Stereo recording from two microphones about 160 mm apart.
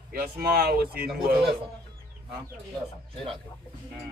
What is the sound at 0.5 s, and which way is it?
Speech, 75° right (ahead or behind).